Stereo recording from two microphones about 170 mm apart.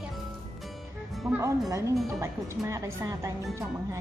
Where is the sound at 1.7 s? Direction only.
20° right (ahead or behind).